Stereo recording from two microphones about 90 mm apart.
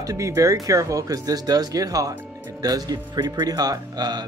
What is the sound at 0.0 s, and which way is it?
Speech, 35° right (ahead or behind).